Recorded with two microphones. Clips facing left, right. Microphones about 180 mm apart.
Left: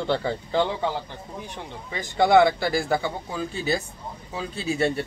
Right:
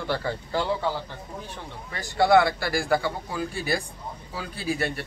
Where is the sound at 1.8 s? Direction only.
20° left (ahead or behind).